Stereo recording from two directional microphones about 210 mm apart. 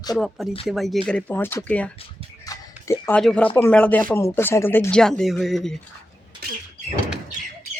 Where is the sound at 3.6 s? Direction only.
5° left (ahead or behind).